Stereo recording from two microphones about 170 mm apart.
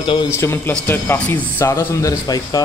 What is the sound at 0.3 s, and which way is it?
Speech, 15° left (ahead or behind).